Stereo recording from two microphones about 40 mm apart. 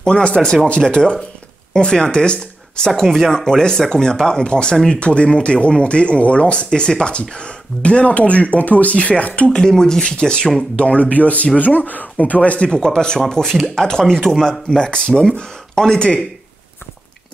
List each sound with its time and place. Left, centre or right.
0.0 s speech: left
3.0 s speech: centre; by 8.9 s left
8.9 s speech: left
9.5 s speech: centre
14.8 s speech: left
15.7 s speech: centre